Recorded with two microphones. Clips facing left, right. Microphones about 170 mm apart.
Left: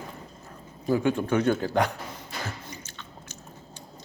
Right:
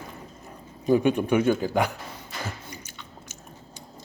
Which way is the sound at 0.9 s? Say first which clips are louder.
Right 3 dB; 20° right (ahead or behind).